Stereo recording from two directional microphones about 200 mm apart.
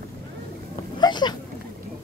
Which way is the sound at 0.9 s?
20° left (ahead or behind).